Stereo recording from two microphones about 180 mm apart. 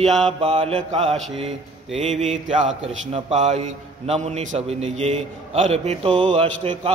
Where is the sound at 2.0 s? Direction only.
40° right (ahead or behind).